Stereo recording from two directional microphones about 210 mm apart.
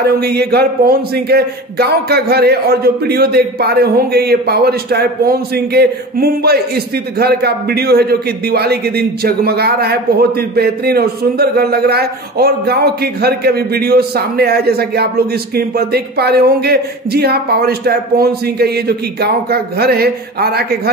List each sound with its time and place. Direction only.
0.2 s a man's voice: 50° right (ahead or behind)